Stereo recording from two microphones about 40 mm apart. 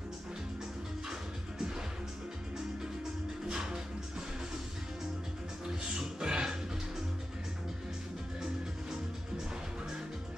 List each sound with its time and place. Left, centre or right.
3.4 s music: centre
5.7 s music: centre